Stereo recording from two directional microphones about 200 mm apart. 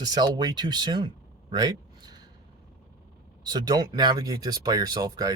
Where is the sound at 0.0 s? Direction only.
20° right (ahead or behind).